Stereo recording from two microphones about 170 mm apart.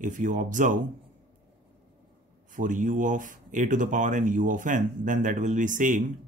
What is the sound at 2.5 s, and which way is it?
Speech, 50° right (ahead or behind).